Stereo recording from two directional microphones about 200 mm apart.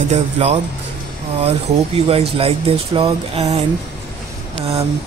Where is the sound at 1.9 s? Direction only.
30° right (ahead or behind).